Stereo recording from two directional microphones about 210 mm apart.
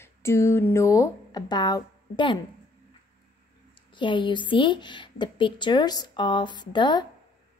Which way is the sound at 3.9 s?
25° left (ahead or behind).